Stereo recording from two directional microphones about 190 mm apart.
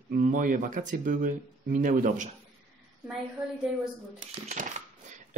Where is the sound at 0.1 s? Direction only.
45° right (ahead or behind).